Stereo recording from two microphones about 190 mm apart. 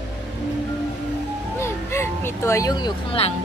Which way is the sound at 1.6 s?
15° left (ahead or behind).